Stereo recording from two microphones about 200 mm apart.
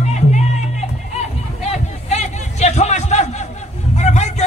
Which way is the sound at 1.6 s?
35° left (ahead or behind).